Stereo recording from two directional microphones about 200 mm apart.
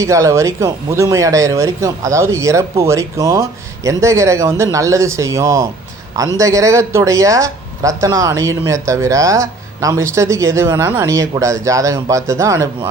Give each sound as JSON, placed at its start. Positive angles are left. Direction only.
{"t": 0.0, "sound": "speech", "side_deg": -15}